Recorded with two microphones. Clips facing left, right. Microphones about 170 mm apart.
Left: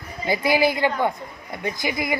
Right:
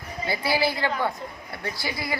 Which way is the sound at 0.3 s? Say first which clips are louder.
Left 5 dB; 15° left (ahead or behind).